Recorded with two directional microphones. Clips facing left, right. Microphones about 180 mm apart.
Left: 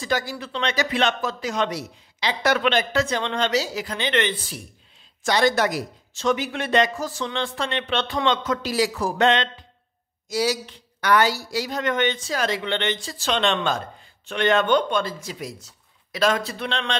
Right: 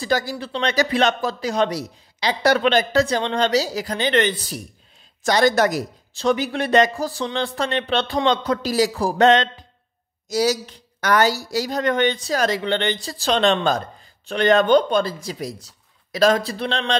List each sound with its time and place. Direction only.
0.0 s speech: 35° right (ahead or behind)